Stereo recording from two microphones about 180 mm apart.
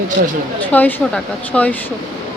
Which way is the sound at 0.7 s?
10° left (ahead or behind).